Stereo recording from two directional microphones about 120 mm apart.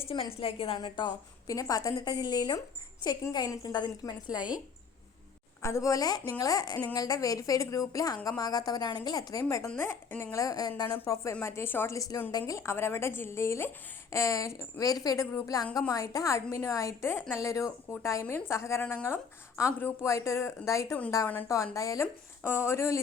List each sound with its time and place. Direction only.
0.3 s a woman's voice: 50° left (ahead or behind); by 4.4 s 30° left (ahead or behind)
5.6 s a woman's voice: 25° left (ahead or behind)